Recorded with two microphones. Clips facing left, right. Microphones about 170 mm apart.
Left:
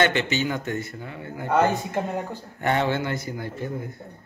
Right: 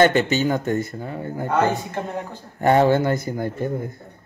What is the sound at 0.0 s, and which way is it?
Speech, 40° right (ahead or behind).